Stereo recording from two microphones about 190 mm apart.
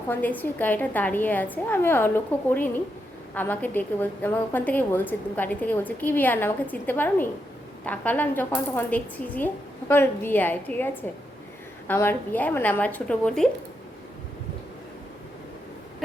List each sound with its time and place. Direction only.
0.1 s a woman's voice: 10° left (ahead or behind)